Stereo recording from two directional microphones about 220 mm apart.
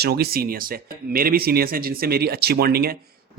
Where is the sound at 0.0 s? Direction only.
45° right (ahead or behind).